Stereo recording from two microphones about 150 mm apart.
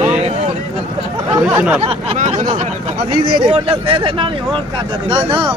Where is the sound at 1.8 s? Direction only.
40° right (ahead or behind).